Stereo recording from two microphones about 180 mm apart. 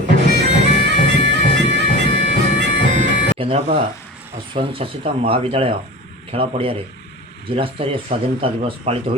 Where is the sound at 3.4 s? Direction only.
30° right (ahead or behind).